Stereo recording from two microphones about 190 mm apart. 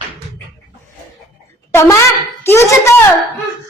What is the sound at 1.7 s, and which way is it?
A child's voice, 15° left (ahead or behind).